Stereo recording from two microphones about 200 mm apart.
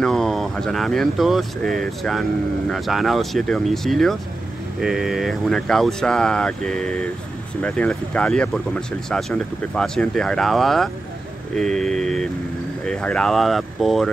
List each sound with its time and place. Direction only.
0.0 s speech: centre (ahead or behind)